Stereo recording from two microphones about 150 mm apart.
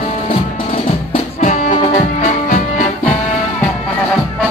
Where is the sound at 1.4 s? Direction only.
55° left (ahead or behind).